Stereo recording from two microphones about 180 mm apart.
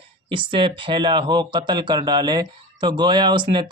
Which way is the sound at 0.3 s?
30° right (ahead or behind).